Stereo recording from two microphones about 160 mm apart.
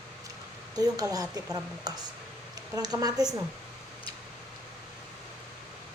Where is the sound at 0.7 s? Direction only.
25° right (ahead or behind).